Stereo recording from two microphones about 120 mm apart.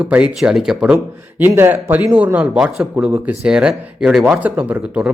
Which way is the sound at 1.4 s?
20° right (ahead or behind).